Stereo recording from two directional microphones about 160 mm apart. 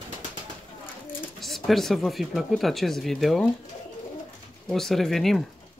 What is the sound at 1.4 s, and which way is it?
Speech, centre (ahead or behind).